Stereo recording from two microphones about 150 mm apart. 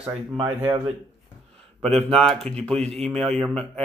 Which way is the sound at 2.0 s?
5° left (ahead or behind).